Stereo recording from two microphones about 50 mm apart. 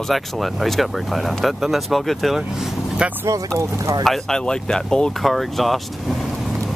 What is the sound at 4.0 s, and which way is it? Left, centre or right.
Speech, centre.